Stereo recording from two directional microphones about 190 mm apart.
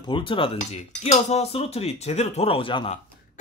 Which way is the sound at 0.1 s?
25° left (ahead or behind).